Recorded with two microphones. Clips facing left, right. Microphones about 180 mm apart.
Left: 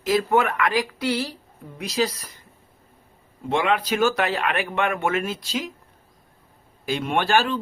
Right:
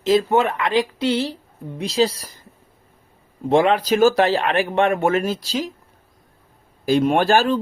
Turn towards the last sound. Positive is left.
turn(degrees=-40)  # may be behind; listen again after turning